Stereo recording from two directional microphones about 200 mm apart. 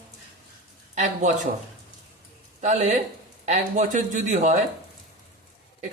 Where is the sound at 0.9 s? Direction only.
35° right (ahead or behind).